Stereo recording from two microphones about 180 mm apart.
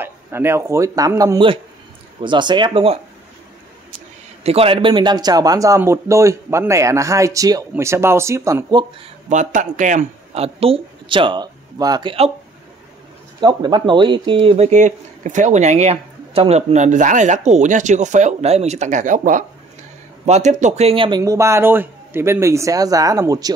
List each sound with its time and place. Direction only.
0.0 s speech: 15° right (ahead or behind); by 3.0 s 30° right (ahead or behind)
4.4 s speech: 35° right (ahead or behind)
9.3 s speech: 45° right (ahead or behind); by 12.3 s 25° right (ahead or behind)
13.4 s speech: 25° right (ahead or behind)
21.2 s speech: 15° right (ahead or behind)